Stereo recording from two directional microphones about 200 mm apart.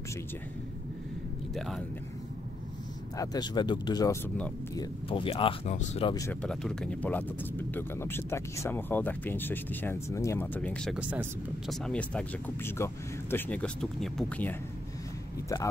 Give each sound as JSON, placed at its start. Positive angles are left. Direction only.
{"t": 1.5, "sound": "speech", "side_deg": 0}
{"t": 3.2, "sound": "speech", "side_deg": 20}
{"t": 6.0, "sound": "speech", "side_deg": 15}
{"t": 6.4, "sound": "speech", "side_deg": 5}
{"t": 11.0, "sound": "speech", "side_deg": -5}